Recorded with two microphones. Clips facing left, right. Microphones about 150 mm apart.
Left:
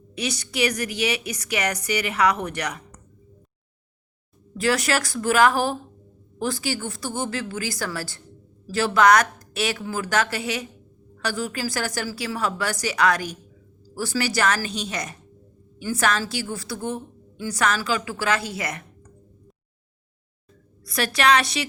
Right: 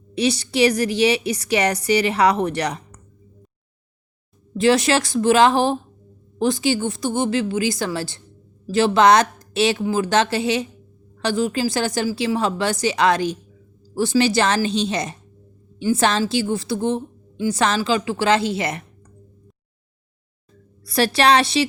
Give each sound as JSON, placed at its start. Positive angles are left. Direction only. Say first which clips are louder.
{"t": 0.1, "sound": "a woman's voice", "louder": "right 9 dB", "side_deg": -30}
{"t": 4.5, "sound": "a woman's voice", "louder": "right 6 dB", "side_deg": -25}
{"t": 20.8, "sound": "a woman's voice", "louder": "right 4 dB", "side_deg": -30}